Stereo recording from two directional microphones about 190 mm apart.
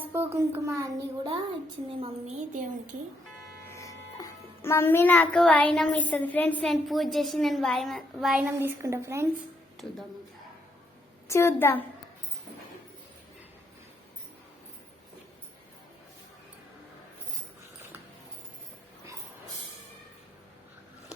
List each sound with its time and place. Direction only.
0.0 s a child's voice: 10° right (ahead or behind)
1.9 s a woman's voice: 30° right (ahead or behind)
2.5 s a woman's voice: 45° right (ahead or behind)
3.6 s a child's voice: 15° left (ahead or behind); by 8.4 s centre (ahead or behind)
8.5 s a child's voice: 15° right (ahead or behind)
11.3 s a woman's voice: 15° left (ahead or behind)